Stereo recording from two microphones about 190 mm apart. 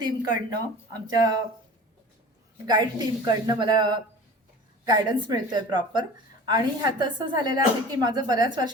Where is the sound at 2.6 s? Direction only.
20° right (ahead or behind).